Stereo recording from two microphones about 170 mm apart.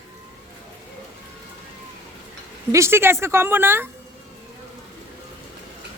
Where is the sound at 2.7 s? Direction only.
15° right (ahead or behind).